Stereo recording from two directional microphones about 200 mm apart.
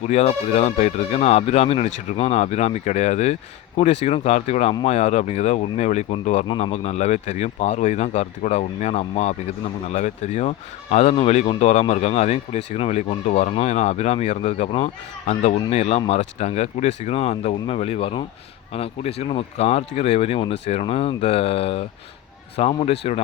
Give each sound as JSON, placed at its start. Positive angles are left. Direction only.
{"t": 0.1, "sound": "speech", "side_deg": 30}